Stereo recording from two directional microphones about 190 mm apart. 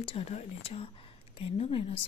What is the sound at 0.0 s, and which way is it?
Speech, 30° left (ahead or behind).